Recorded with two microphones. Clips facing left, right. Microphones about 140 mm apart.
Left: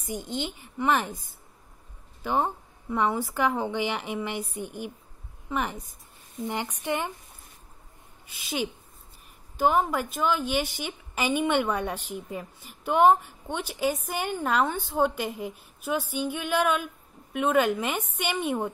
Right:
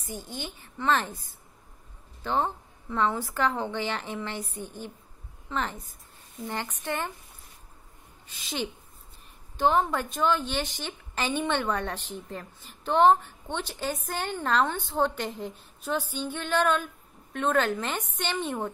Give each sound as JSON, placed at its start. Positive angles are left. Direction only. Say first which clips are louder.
{"t": 0.0, "sound": "a woman's voice", "louder": "left 5 dB", "side_deg": 15}
{"t": 8.3, "sound": "a woman's voice", "louder": "left 3 dB", "side_deg": 10}